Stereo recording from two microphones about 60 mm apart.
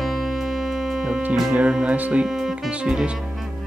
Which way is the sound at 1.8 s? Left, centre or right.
Right.